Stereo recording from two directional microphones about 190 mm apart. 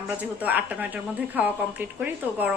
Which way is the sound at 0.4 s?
10° right (ahead or behind).